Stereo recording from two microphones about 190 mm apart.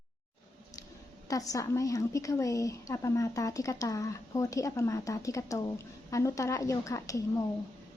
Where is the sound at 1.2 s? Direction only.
20° left (ahead or behind).